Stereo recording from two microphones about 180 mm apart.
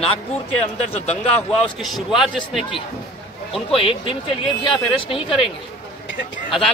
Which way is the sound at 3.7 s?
30° left (ahead or behind).